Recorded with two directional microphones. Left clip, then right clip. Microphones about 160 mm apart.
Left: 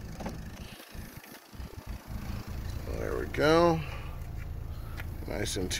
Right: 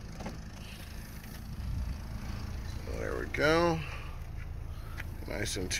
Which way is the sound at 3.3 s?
25° left (ahead or behind).